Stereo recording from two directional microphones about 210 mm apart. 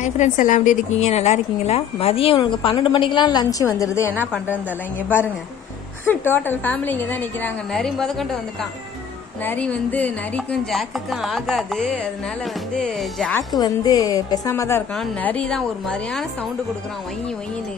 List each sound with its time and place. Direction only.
0.0 s a woman's voice: 35° left (ahead or behind); by 4.1 s 15° left (ahead or behind)
6.0 s a woman's voice: 10° left (ahead or behind)
9.4 s chopping: 10° left (ahead or behind)
13.6 s a woman's voice: 20° left (ahead or behind)
15.0 s chopping: 5° left (ahead or behind)